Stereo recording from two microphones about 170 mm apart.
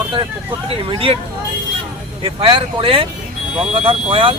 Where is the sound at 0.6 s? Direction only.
35° right (ahead or behind).